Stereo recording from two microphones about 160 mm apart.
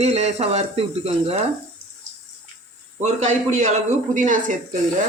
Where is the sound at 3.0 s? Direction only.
45° right (ahead or behind).